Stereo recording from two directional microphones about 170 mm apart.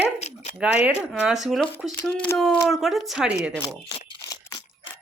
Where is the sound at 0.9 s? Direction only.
10° right (ahead or behind).